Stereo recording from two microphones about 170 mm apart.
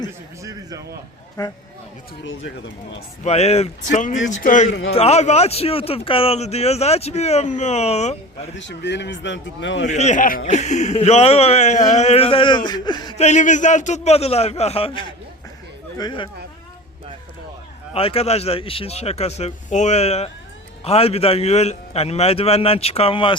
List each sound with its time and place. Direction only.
1.4 s a sound: 20° left (ahead or behind)
3.2 s a man's voice: 40° left (ahead or behind)
4.7 s a man's voice: 80° left
4.9 s a man's voice: 40° left (ahead or behind)
8.5 s speech: 90° left
9.9 s a man's voice: 45° left (ahead or behind)
11.9 s a sound: 40° left (ahead or behind)
13.1 s a man's voice: 45° left (ahead or behind)
16.0 s a sound: 25° left (ahead or behind)
17.9 s a man's voice: 35° left (ahead or behind)